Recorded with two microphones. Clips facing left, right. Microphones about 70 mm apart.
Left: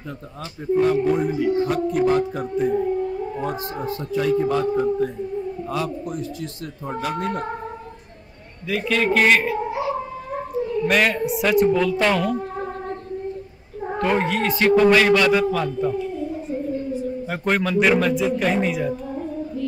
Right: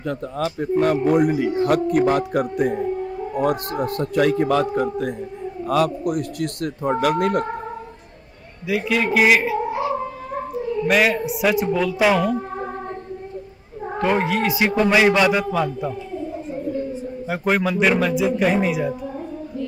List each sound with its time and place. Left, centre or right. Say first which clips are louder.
0.4 s speech: even; right
8.6 s a man's voice: even; centre
10.9 s speech: right 3 dB; centre
13.9 s a man's voice: right 1 dB; centre
17.3 s speech: right 2 dB; centre